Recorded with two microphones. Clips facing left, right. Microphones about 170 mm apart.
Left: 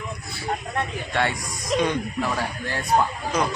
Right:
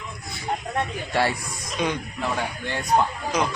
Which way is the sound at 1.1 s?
5° right (ahead or behind).